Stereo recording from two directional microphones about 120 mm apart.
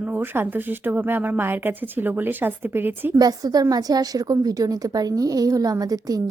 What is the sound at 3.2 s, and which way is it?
A woman's voice, 30° right (ahead or behind).